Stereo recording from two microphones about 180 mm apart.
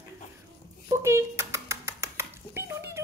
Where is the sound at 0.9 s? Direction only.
15° right (ahead or behind).